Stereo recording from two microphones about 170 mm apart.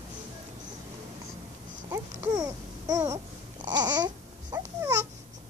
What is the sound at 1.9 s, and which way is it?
Babbling, 20° right (ahead or behind).